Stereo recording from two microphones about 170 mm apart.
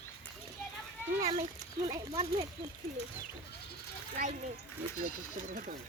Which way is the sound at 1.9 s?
20° right (ahead or behind).